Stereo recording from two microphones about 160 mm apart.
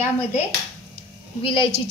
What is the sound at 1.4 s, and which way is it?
Speech, 35° left (ahead or behind).